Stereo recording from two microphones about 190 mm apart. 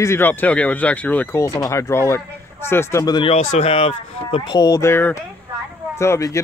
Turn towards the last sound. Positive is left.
turn(degrees=15)  # may be behind; listen again after turning